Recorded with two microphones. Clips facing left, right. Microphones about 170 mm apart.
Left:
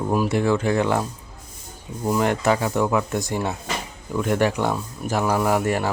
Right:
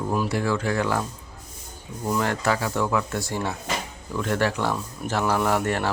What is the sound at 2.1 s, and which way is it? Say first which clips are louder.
Speech: left 4 dB; 15° left (ahead or behind).